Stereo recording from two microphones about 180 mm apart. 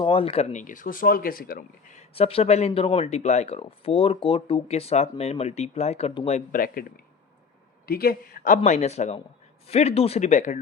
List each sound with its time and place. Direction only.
0.0 s speech: 30° left (ahead or behind); by 2.0 s 50° left (ahead or behind)
2.1 s speech: 35° left (ahead or behind)
7.9 s speech: 55° left (ahead or behind)